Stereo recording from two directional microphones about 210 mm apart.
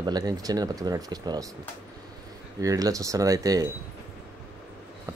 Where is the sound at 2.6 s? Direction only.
15° right (ahead or behind).